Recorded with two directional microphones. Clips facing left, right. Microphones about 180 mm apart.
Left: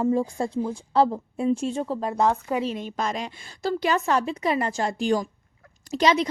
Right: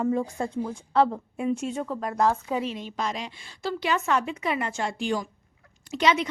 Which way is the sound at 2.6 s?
45° left (ahead or behind).